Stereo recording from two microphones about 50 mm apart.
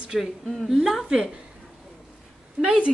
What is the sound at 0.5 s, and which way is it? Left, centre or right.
Speech, centre.